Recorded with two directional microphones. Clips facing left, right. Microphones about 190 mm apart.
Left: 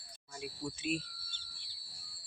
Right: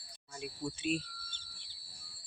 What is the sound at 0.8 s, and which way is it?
Speech, 5° left (ahead or behind).